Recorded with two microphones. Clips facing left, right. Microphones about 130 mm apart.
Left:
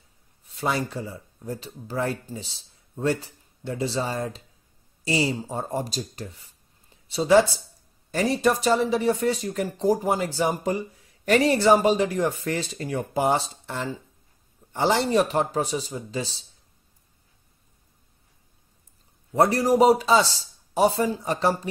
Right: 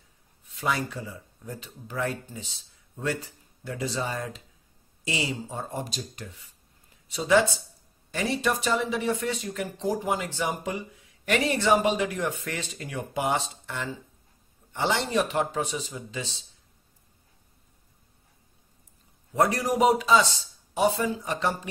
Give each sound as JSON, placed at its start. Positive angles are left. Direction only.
{"t": 0.5, "sound": "speech", "side_deg": 35}
{"t": 19.3, "sound": "speech", "side_deg": 35}